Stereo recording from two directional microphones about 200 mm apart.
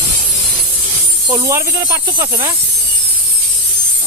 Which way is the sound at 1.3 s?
15° right (ahead or behind).